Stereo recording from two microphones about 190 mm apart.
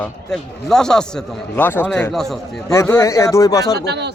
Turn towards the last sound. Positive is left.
turn(degrees=-60)  # may be behind; listen again after turning